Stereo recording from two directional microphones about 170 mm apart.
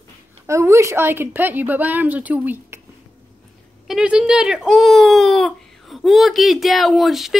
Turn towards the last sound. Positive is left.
turn(degrees=0)  # may be behind; listen again after turning